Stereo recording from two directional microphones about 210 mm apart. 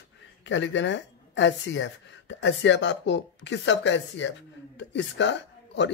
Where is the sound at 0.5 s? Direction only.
60° left (ahead or behind).